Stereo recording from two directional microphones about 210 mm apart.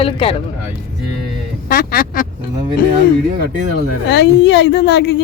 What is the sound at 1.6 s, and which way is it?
Speech, 45° left (ahead or behind).